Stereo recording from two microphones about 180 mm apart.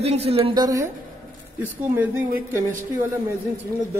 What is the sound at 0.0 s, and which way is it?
Speech, 35° right (ahead or behind).